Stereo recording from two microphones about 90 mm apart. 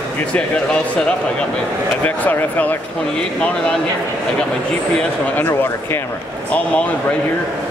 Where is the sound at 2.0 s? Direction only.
20° left (ahead or behind).